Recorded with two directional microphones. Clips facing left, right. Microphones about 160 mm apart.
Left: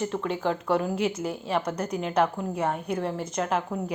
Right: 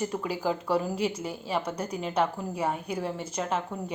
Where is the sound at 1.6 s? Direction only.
30° right (ahead or behind).